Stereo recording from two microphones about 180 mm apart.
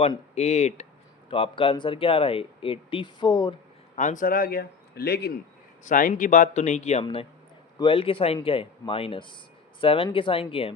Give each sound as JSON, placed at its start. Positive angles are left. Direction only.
{"t": 0.0, "sound": "speech", "side_deg": 35}
{"t": 3.9, "sound": "a man's voice", "side_deg": 45}
{"t": 5.8, "sound": "speech", "side_deg": 45}